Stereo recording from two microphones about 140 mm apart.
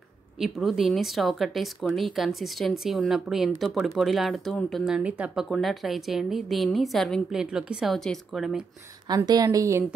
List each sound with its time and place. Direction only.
0.4 s speech: centre (ahead or behind)
9.1 s a woman's voice: 25° right (ahead or behind)